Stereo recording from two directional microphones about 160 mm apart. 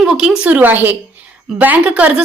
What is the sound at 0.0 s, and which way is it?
A woman's voice, 5° right (ahead or behind).